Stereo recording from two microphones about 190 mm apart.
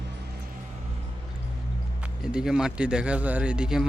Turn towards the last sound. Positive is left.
turn(degrees=-5)  # may be behind; listen again after turning